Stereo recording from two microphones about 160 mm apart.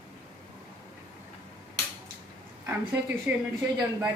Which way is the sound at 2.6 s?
15° right (ahead or behind).